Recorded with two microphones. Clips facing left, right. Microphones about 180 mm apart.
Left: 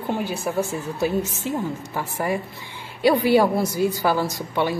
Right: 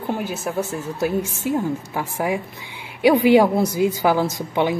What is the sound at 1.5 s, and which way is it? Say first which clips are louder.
A woman's voice: right 4 dB; 10° right (ahead or behind).